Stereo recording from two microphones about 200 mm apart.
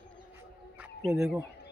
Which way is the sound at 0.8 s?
5° right (ahead or behind).